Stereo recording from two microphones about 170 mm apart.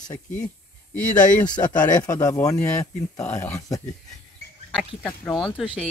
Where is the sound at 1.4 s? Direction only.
25° left (ahead or behind).